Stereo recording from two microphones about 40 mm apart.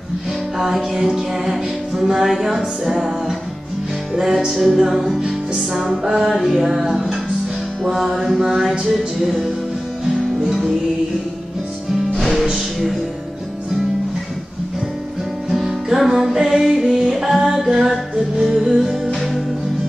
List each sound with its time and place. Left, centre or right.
0.9 s music: centre
6.0 s music: centre
6.3 s music: centre
8.8 s music: centre
10.4 s music: centre
12.2 s music: centre
15.5 s music: centre
17.1 s music: centre